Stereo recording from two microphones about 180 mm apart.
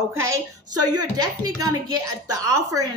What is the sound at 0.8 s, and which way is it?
Speech, 20° right (ahead or behind).